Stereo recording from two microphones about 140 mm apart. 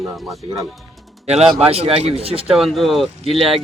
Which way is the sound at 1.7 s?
45° right (ahead or behind).